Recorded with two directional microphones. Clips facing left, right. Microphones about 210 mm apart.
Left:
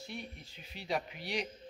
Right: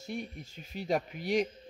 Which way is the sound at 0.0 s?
45° right (ahead or behind).